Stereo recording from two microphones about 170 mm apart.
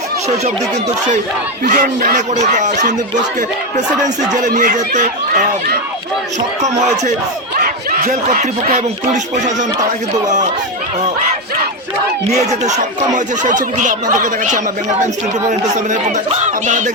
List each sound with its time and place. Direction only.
1.6 s speech: 50° right (ahead or behind)
4.4 s speech: 50° right (ahead or behind)
7.6 s speech: 55° right (ahead or behind)
12.3 s speech: 40° right (ahead or behind)